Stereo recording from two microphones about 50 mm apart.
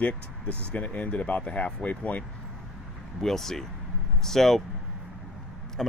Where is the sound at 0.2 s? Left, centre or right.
Right.